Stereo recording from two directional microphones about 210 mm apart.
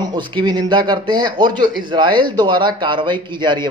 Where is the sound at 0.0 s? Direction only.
20° right (ahead or behind).